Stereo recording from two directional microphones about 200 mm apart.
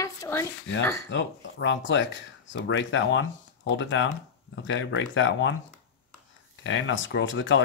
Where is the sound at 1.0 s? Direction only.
65° left (ahead or behind).